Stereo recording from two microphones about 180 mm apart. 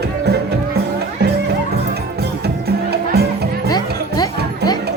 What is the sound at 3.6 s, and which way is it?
Music, 20° left (ahead or behind).